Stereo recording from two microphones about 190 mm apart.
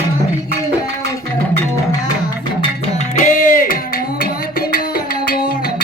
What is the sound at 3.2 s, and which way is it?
Music, 45° left (ahead or behind).